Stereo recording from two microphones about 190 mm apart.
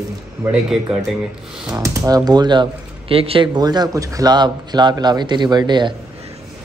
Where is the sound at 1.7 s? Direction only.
15° right (ahead or behind).